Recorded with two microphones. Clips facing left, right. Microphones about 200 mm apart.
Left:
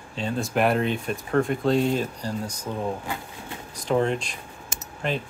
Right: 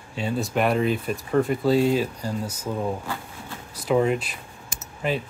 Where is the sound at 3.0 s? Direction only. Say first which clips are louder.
Even; 20° left (ahead or behind).